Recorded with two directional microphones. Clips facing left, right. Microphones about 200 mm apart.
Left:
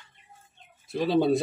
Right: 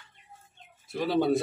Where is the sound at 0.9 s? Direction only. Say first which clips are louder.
Left 2 dB; 20° left (ahead or behind).